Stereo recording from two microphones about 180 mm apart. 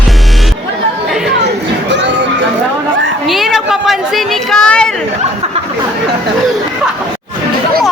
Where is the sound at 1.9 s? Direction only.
80° right.